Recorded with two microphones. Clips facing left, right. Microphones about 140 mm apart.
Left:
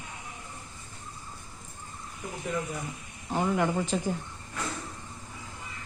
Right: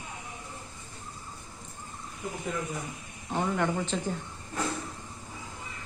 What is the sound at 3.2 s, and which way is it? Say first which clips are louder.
Speech: left 2 dB; 5° left (ahead or behind).